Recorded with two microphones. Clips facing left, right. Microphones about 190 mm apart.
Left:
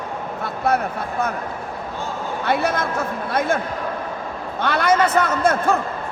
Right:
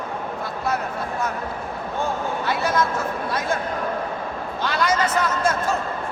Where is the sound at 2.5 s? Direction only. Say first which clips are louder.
Left 2 dB; 60° left (ahead or behind).